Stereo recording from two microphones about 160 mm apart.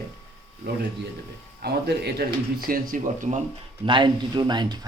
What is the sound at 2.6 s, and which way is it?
Speech, 60° right (ahead or behind).